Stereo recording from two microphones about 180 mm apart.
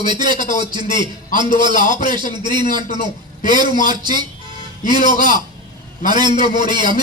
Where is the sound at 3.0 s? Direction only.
50° left (ahead or behind).